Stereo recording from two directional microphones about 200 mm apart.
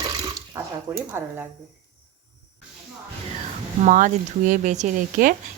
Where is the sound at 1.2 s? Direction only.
10° right (ahead or behind).